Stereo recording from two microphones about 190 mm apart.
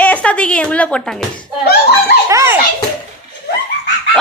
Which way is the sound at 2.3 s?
15° right (ahead or behind).